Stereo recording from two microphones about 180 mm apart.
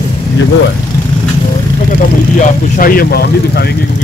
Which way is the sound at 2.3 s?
50° left (ahead or behind).